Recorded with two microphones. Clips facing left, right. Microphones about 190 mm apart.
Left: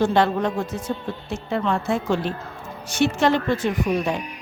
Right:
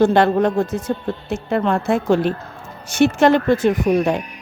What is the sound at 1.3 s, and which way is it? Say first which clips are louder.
A woman's voice: right 4 dB; 55° right (ahead or behind).